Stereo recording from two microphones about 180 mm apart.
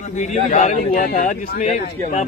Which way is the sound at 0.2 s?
40° left (ahead or behind).